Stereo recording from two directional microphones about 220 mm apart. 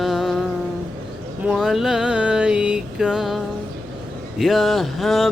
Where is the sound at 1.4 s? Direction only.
5° right (ahead or behind).